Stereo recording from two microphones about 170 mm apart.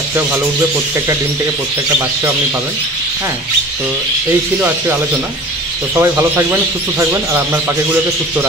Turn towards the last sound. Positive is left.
turn(degrees=-15)  # may be behind; listen again after turning